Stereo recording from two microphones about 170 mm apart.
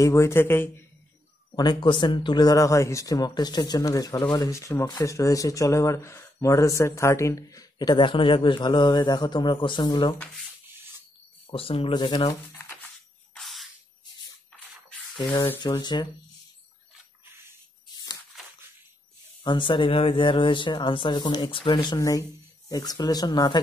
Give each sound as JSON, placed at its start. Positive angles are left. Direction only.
{"t": 0.0, "sound": "a man's voice", "side_deg": 15}
{"t": 1.5, "sound": "speech", "side_deg": 25}
{"t": 11.5, "sound": "speech", "side_deg": 35}
{"t": 12.3, "sound": "speech", "side_deg": 15}
{"t": 13.3, "sound": "a sound", "side_deg": 0}
{"t": 15.1, "sound": "speech", "side_deg": 25}
{"t": 19.4, "sound": "speech", "side_deg": 30}